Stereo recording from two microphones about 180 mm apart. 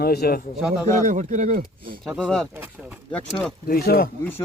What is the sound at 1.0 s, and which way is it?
Speech, 45° right (ahead or behind).